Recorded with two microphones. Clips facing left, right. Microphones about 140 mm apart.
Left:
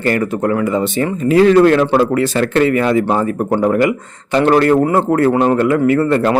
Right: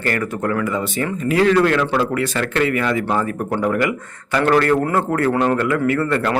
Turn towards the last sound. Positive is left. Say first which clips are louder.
# left 6 dB
turn(degrees=30)  # may be behind; listen again after turning